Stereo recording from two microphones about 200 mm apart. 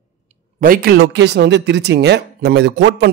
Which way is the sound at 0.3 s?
45° right (ahead or behind).